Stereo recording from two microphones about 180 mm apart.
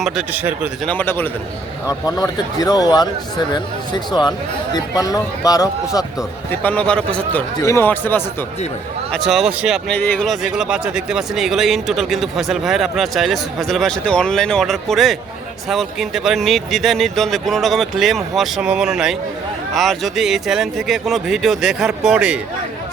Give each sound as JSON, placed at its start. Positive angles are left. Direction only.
{"t": 0.0, "sound": "speech", "side_deg": -5}
{"t": 0.9, "sound": "a man's voice", "side_deg": 10}
{"t": 6.5, "sound": "a man's voice", "side_deg": 10}
{"t": 9.1, "sound": "speech", "side_deg": 0}